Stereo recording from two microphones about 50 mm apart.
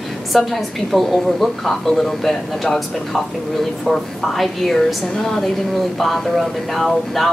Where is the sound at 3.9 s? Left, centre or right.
Centre.